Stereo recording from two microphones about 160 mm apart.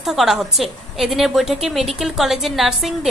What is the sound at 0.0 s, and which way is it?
A woman's voice, centre (ahead or behind).